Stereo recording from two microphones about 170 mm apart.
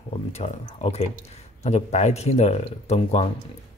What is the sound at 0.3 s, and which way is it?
Speech, 40° left (ahead or behind).